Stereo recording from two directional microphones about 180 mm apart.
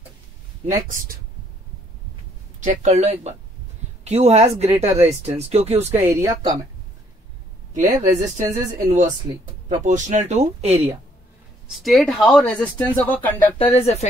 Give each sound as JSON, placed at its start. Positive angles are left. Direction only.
{"t": 2.6, "sound": "speech", "side_deg": -40}
{"t": 5.9, "sound": "speech", "side_deg": -15}
{"t": 7.7, "sound": "speech", "side_deg": -45}
{"t": 11.6, "sound": "speech", "side_deg": 0}
{"t": 13.6, "sound": "speech", "side_deg": 35}